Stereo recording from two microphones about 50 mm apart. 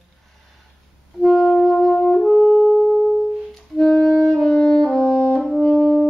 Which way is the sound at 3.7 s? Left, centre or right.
Centre.